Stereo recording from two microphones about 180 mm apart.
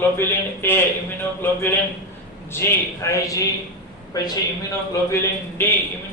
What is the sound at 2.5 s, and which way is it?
A man's voice, 15° left (ahead or behind).